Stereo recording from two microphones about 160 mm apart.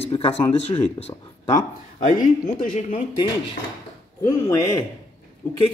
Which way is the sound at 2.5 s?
55° left (ahead or behind).